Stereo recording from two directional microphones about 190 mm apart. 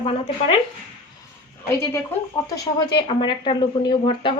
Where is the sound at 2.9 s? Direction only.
25° left (ahead or behind).